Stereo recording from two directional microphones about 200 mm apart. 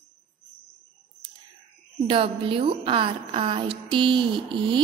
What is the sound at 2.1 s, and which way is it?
A woman's voice, 25° right (ahead or behind).